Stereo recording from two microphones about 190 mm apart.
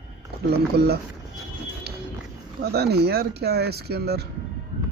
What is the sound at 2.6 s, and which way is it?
Speech, 55° right (ahead or behind).